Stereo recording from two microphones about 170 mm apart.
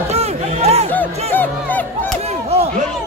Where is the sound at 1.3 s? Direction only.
10° left (ahead or behind).